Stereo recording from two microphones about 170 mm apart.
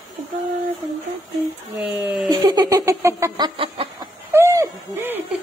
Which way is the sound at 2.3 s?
25° right (ahead or behind).